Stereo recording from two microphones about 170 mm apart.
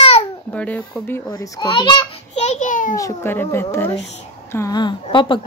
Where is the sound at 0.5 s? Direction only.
10° left (ahead or behind).